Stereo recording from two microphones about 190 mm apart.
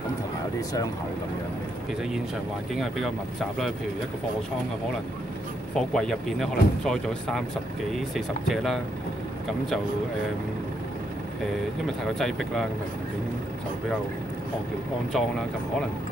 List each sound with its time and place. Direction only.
2.7 s speech: centre (ahead or behind)
5.8 s speech: centre (ahead or behind)
12.2 s speech: centre (ahead or behind)
15.1 s speech: centre (ahead or behind)